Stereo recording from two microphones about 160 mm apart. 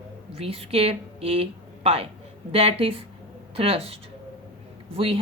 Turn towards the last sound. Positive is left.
turn(degrees=-35)  # may be behind; listen again after turning